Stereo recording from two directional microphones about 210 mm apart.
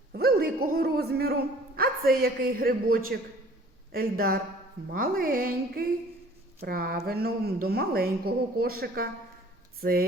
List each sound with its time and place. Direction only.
0.1 s a man's voice: 45° right (ahead or behind)